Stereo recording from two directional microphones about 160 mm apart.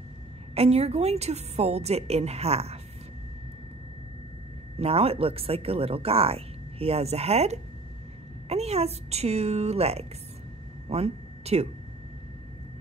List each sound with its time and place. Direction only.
0.6 s speech: 40° right (ahead or behind)
4.7 s speech: 40° right (ahead or behind)
10.9 s a sound: 40° right (ahead or behind)